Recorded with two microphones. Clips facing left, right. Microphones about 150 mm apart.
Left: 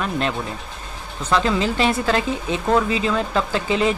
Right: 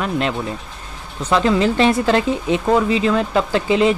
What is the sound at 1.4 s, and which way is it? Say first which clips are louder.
A man's voice: right 5 dB; 25° right (ahead or behind).